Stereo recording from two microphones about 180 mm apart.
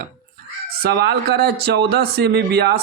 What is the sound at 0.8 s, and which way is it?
Speech, 65° right (ahead or behind).